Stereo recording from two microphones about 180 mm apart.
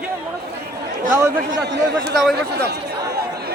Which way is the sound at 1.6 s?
65° right (ahead or behind).